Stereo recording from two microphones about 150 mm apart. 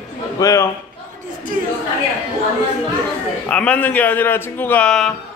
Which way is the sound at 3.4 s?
10° left (ahead or behind).